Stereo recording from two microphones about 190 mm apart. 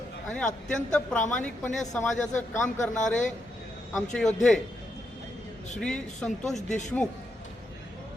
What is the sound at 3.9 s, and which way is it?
Speech, 5° left (ahead or behind).